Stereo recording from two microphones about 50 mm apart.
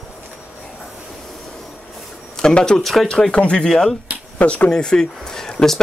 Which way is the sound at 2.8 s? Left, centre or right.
Centre.